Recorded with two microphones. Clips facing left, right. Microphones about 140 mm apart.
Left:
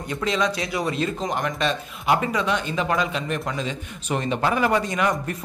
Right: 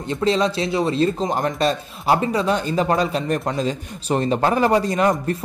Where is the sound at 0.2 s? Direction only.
30° right (ahead or behind).